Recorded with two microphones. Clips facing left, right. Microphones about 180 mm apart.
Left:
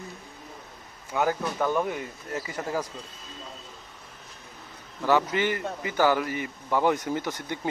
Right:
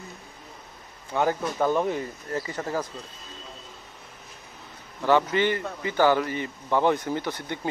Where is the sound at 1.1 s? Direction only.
5° left (ahead or behind).